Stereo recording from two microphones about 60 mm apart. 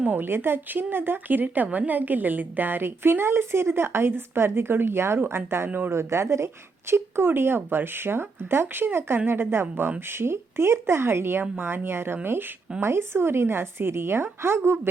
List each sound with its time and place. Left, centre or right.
0.1 s speech: right
5.6 s speech: right
5.9 s speech: right